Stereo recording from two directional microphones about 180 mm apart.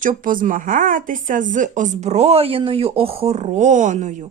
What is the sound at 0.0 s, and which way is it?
Speech, 50° right (ahead or behind).